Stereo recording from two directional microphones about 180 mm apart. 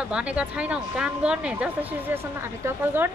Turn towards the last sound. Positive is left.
turn(degrees=-15)  # may be behind; listen again after turning